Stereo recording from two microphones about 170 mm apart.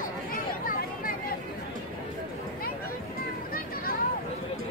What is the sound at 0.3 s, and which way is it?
Chatter, 60° left (ahead or behind).